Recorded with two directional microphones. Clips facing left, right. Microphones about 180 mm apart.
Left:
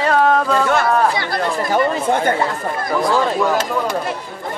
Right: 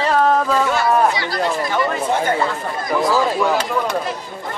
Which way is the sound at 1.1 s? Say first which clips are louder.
Even; 50° left (ahead or behind).